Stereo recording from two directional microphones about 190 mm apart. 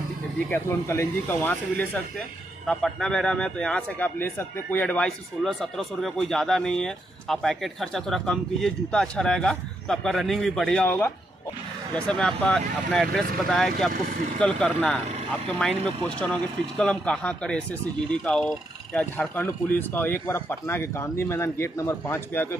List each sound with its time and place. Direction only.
0.5 s speech: 15° left (ahead or behind)
13.9 s speech: 45° right (ahead or behind)
14.4 s speech: 5° left (ahead or behind)
15.0 s speech: 35° right (ahead or behind)
15.6 s speech: 10° left (ahead or behind)